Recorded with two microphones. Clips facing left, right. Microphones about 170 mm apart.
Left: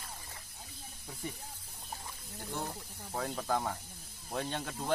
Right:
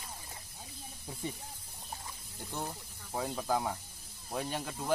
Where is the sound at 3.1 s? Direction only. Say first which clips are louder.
Right 1 dB; 5° right (ahead or behind).